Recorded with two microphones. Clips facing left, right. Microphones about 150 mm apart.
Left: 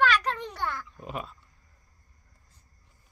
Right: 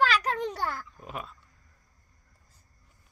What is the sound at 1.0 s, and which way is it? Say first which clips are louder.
Speech: left 3 dB; centre (ahead or behind).